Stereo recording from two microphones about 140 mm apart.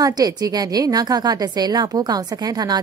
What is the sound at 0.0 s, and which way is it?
A woman's voice, 25° right (ahead or behind).